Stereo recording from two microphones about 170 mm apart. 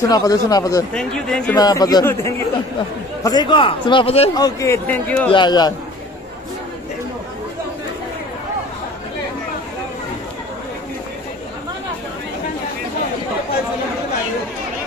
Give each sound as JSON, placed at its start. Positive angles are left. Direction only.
{"t": 0.1, "sound": "a man's voice", "side_deg": 20}
{"t": 0.9, "sound": "speech", "side_deg": 5}
{"t": 1.6, "sound": "a man's voice", "side_deg": 25}
{"t": 4.4, "sound": "speech", "side_deg": 20}
{"t": 5.3, "sound": "a man's voice", "side_deg": 25}